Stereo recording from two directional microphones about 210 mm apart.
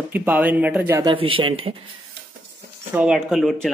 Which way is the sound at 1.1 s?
25° right (ahead or behind).